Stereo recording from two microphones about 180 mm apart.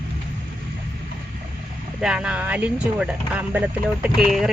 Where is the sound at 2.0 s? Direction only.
5° right (ahead or behind).